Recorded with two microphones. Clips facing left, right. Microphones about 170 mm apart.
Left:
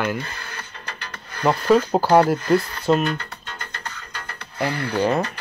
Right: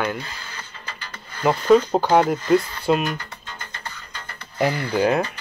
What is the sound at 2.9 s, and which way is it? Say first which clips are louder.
Speech: left 1 dB; 5° right (ahead or behind).